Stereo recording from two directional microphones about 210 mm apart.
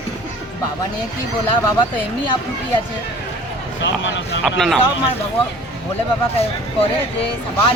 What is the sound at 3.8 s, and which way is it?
Speech, 60° left (ahead or behind).